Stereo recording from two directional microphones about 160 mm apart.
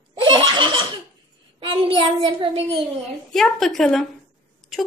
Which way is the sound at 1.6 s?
35° right (ahead or behind).